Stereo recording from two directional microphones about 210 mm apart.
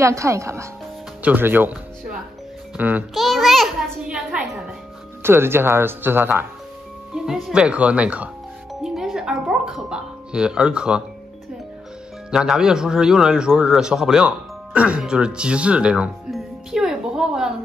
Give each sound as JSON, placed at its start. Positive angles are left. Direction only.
{"t": 0.0, "sound": "a child's voice", "side_deg": -15}
{"t": 12.3, "sound": "a man's voice", "side_deg": 0}